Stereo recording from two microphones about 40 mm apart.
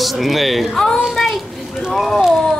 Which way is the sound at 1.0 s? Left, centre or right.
Centre.